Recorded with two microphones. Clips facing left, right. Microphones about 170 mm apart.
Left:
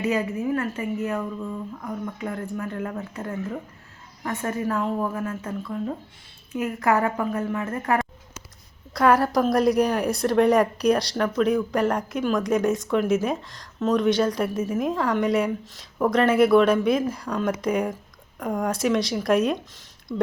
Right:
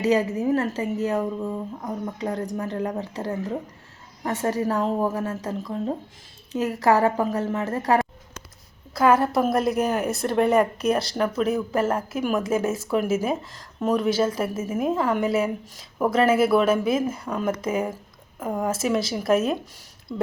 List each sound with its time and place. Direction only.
0.0 s speech: 35° right (ahead or behind)
9.0 s a woman's voice: centre (ahead or behind)
20.1 s a woman's voice: 15° right (ahead or behind)